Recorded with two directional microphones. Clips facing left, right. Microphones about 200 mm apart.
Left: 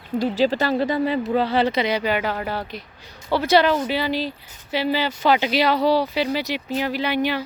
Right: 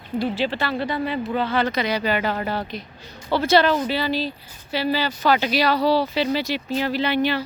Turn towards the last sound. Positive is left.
turn(degrees=15)  # may be behind; listen again after turning